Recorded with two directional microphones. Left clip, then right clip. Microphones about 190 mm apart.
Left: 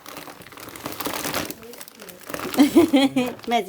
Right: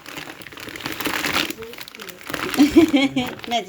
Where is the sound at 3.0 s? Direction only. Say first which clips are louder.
Even; 15° left (ahead or behind).